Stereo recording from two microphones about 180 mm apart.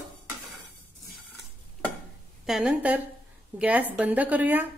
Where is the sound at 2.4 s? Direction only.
5° right (ahead or behind).